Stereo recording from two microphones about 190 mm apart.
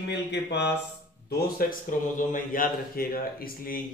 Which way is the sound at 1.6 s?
45° left (ahead or behind).